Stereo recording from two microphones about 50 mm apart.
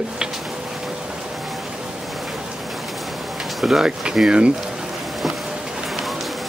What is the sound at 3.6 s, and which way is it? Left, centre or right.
Speech, centre.